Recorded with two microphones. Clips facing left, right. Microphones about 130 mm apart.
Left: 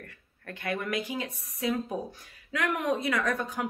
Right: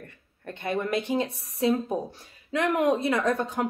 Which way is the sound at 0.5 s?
25° right (ahead or behind).